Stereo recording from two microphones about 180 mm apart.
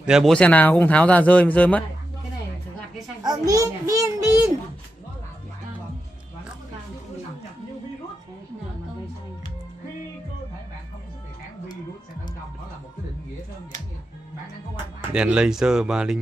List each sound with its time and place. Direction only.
0.0 s speech: centre (ahead or behind)
3.3 s a child's voice: 20° right (ahead or behind)
14.8 s speech: 5° right (ahead or behind)